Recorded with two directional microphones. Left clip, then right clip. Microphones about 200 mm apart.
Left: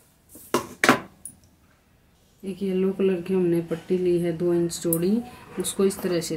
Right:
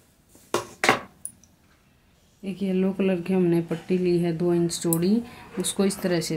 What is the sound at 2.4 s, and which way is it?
Speech, 40° right (ahead or behind).